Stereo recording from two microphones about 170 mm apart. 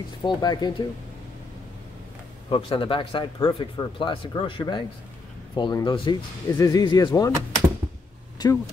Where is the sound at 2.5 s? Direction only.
30° left (ahead or behind).